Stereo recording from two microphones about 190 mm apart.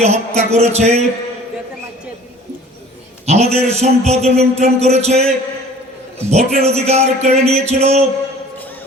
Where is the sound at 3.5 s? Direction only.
35° right (ahead or behind).